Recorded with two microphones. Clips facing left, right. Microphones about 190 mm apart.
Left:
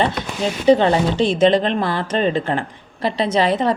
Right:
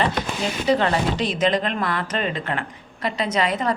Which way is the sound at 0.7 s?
30° left (ahead or behind).